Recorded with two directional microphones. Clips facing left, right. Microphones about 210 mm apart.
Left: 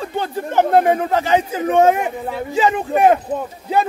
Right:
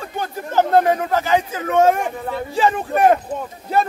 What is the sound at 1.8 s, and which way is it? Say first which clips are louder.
Speech: left 1 dB; 5° left (ahead or behind).